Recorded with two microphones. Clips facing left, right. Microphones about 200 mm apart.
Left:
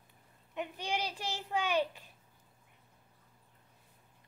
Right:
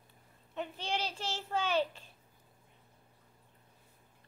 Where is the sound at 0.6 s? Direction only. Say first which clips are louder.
Even; 15° left (ahead or behind).